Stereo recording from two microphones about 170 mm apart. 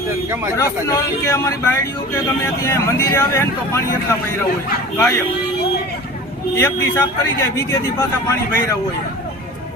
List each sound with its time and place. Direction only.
0.5 s a man's voice: 20° left (ahead or behind)
4.9 s a man's voice: 15° left (ahead or behind)
6.6 s a man's voice: 15° left (ahead or behind)